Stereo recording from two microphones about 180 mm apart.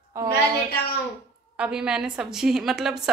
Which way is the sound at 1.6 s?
5° right (ahead or behind).